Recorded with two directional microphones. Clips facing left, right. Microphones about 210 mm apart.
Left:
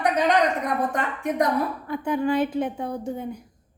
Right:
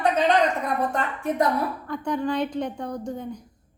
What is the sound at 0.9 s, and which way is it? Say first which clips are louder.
Speech: even; 15° left (ahead or behind).